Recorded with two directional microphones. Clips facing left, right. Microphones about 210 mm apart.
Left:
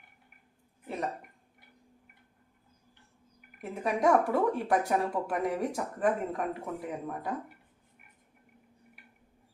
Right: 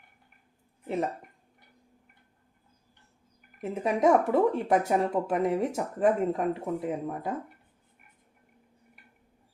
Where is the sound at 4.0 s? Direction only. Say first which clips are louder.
Right 3 dB; 20° right (ahead or behind).